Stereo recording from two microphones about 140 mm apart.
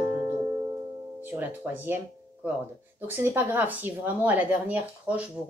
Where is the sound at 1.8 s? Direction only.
15° right (ahead or behind).